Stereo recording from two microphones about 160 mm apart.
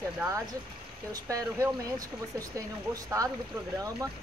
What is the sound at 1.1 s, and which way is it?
Speech, 20° right (ahead or behind).